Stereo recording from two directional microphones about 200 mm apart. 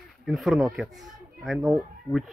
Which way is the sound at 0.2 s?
Centre (ahead or behind).